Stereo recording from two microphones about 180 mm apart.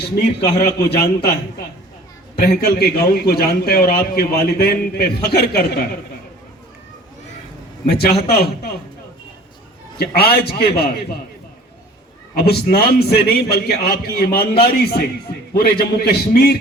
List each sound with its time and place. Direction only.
0.0 s a man's voice: 65° left (ahead or behind)
0.9 s a man's voice: 20° left (ahead or behind)
2.4 s a man's voice: 60° left (ahead or behind)
7.9 s a man's voice: 60° left (ahead or behind)
10.0 s a man's voice: 60° left (ahead or behind)
12.3 s a man's voice: 60° left (ahead or behind)